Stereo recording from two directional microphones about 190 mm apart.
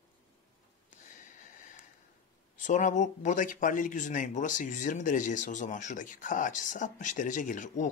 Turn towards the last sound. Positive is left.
turn(degrees=45)  # may be behind; listen again after turning